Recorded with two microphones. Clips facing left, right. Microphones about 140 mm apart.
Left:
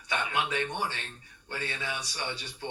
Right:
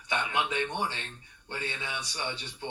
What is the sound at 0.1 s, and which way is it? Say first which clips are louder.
Speech: even; 20° right (ahead or behind).